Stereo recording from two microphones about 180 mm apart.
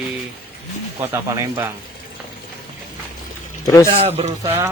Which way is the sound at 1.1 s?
15° right (ahead or behind).